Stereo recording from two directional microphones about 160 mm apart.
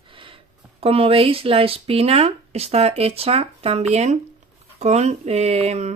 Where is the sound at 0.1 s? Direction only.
35° right (ahead or behind).